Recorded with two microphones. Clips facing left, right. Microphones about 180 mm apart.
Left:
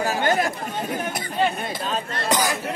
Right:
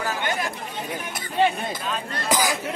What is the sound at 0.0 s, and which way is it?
Chatter, 35° left (ahead or behind).